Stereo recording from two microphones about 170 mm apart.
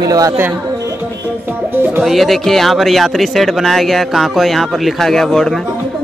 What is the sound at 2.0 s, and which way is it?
A man's voice, centre (ahead or behind).